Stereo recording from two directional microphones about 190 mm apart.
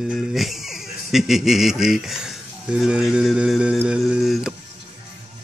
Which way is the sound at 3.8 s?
5° right (ahead or behind).